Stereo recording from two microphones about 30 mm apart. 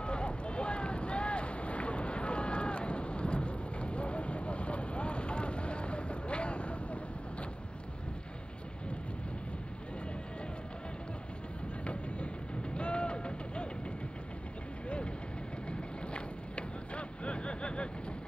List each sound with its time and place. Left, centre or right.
0.0 s boat: left
11.8 s music: left
12.7 s a sound: left
15.7 s vehicle: left